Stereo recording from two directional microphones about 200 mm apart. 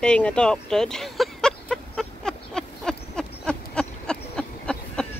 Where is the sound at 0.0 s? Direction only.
5° left (ahead or behind).